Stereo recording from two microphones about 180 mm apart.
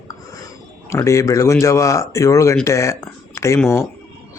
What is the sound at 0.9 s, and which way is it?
Speech, 15° left (ahead or behind).